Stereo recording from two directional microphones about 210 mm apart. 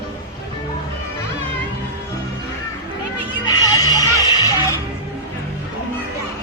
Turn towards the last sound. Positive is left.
turn(degrees=20)  # may be behind; listen again after turning